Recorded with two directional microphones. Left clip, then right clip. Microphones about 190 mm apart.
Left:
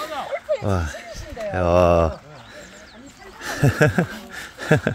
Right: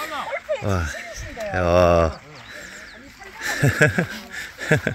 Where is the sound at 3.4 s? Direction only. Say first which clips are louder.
Right 1 dB; 15° left (ahead or behind).